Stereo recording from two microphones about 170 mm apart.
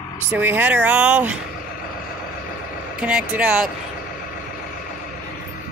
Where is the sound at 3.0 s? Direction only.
5° right (ahead or behind).